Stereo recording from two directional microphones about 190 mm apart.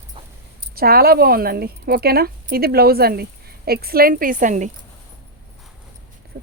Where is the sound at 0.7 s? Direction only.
50° right (ahead or behind).